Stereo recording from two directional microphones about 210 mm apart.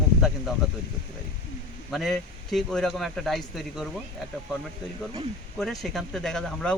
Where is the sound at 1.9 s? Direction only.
Centre (ahead or behind).